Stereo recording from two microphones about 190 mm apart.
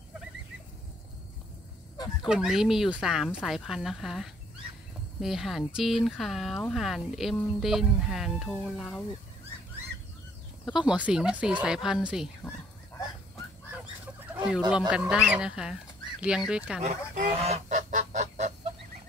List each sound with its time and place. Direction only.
2.2 s speech: 5° right (ahead or behind)
10.6 s speech: 5° right (ahead or behind)
14.3 s chicken: 5° right (ahead or behind)
14.7 s speech: 5° right (ahead or behind)
16.8 s goose: 40° right (ahead or behind)